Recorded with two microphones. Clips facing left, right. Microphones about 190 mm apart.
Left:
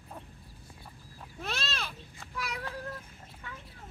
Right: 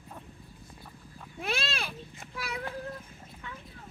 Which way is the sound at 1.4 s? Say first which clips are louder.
Right 4 dB; 10° right (ahead or behind).